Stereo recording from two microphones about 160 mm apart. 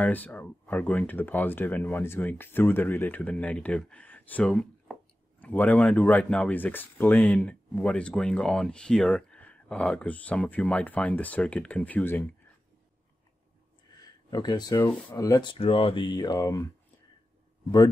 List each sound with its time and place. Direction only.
0.0 s speech: 10° left (ahead or behind)
14.0 s a sound: 25° left (ahead or behind)
14.8 s speech: 10° left (ahead or behind)
15.5 s speech: 35° left (ahead or behind)